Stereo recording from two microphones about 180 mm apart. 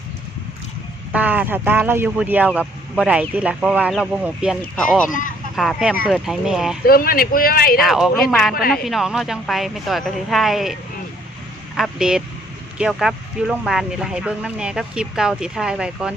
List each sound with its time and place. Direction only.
1.1 s speech: 10° right (ahead or behind)
6.8 s a man's voice: 55° left (ahead or behind)
7.8 s speech: centre (ahead or behind)
11.8 s speech: 5° right (ahead or behind)